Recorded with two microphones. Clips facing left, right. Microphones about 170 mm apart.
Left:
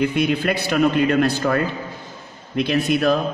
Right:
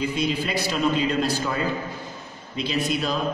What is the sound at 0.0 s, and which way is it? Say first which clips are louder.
A man's voice: left 6 dB; 60° left (ahead or behind).